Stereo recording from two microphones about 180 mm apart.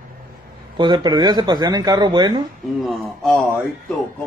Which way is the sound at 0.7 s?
25° right (ahead or behind).